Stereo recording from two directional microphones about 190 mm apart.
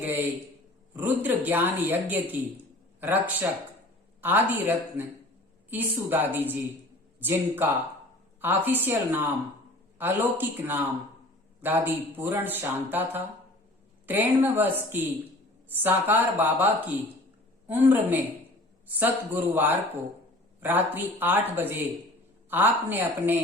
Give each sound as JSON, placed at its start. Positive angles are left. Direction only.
{"t": 0.0, "sound": "speech", "side_deg": -10}